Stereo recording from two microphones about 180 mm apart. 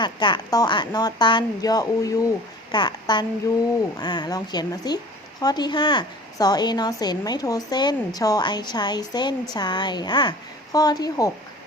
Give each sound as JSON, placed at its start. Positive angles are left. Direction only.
{"t": 0.0, "sound": "a woman's voice", "side_deg": 25}